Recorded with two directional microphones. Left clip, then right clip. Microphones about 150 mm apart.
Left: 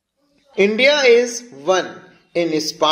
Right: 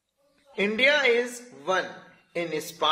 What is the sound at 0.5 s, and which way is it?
A man's voice, 35° left (ahead or behind).